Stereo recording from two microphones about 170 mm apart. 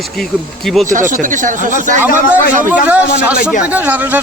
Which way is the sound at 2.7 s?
10° right (ahead or behind).